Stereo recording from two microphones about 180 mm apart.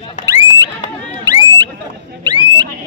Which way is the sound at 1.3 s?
20° right (ahead or behind).